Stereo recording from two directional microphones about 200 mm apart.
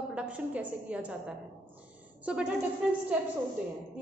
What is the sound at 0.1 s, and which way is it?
A woman's voice, 5° right (ahead or behind).